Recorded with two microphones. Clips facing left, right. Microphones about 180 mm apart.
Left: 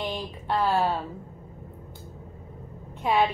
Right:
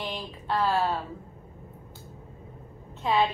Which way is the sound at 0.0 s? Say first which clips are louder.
Left 3 dB; 15° left (ahead or behind).